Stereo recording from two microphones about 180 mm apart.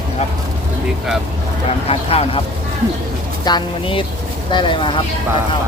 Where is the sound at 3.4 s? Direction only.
25° left (ahead or behind).